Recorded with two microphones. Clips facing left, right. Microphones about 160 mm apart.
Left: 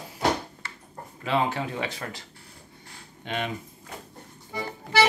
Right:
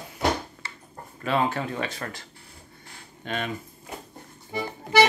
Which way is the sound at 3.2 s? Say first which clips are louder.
Even; 20° left (ahead or behind).